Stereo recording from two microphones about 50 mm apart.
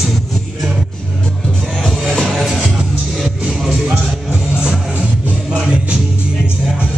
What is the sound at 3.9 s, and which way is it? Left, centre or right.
Music, centre.